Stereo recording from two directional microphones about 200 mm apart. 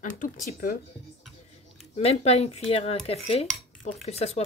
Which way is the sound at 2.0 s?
30° left (ahead or behind).